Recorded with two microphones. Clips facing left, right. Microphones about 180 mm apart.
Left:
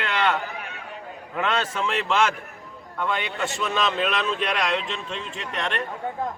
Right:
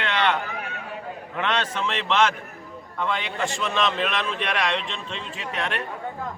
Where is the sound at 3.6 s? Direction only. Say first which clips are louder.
Left 1 dB; 5° left (ahead or behind).